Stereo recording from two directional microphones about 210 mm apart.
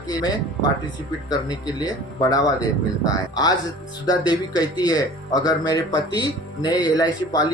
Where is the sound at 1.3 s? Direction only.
20° left (ahead or behind).